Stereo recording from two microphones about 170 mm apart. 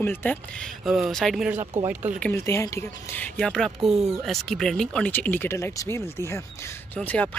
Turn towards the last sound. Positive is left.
turn(degrees=5)  # may be behind; listen again after turning